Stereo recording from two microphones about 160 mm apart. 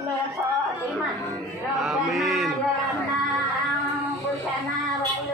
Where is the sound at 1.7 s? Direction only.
Centre (ahead or behind).